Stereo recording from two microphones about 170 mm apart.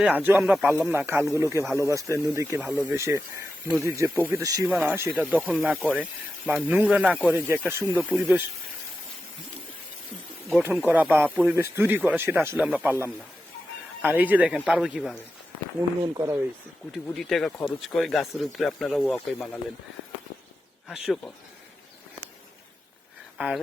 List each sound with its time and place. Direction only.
0.0 s speech: 10° right (ahead or behind)
4.7 s speech: 5° right (ahead or behind)
5.4 s speech: centre (ahead or behind)
10.5 s speech: 10° right (ahead or behind)
16.9 s speech: centre (ahead or behind)
20.8 s speech: centre (ahead or behind)
23.4 s speech: 10° right (ahead or behind)